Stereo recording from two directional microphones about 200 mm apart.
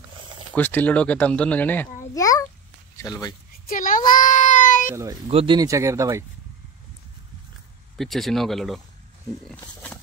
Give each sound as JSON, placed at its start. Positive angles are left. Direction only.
{"t": 0.6, "sound": "a child's voice", "side_deg": 10}
{"t": 3.6, "sound": "child singing", "side_deg": 45}
{"t": 5.3, "sound": "speech", "side_deg": -25}
{"t": 8.0, "sound": "speech", "side_deg": 0}